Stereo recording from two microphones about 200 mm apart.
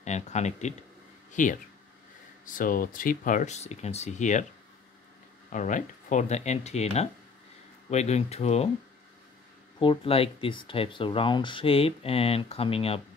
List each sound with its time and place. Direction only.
0.0 s speech: 35° left (ahead or behind)
5.5 s speech: 40° left (ahead or behind)
9.8 s speech: 25° left (ahead or behind)